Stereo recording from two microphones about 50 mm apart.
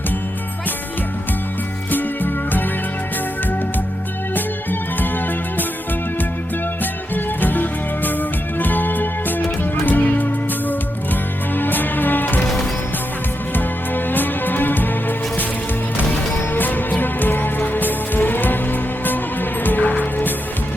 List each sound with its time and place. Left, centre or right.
1.9 s music: left
4.4 s music: left
7.1 s music: left
13.5 s music: left